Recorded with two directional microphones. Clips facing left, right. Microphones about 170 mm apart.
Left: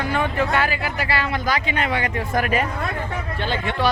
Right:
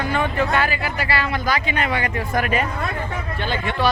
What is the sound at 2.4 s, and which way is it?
Speech, 40° left (ahead or behind).